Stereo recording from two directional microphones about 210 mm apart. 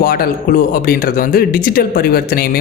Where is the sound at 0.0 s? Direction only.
45° left (ahead or behind).